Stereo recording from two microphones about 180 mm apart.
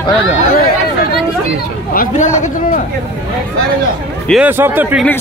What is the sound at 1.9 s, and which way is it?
Speech, 50° left (ahead or behind).